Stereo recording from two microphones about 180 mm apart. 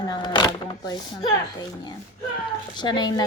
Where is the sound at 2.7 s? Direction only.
25° left (ahead or behind).